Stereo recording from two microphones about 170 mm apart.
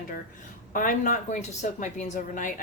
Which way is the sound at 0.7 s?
50° left (ahead or behind).